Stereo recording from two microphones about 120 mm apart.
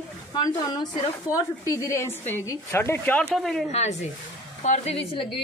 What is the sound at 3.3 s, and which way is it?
Speech, centre (ahead or behind).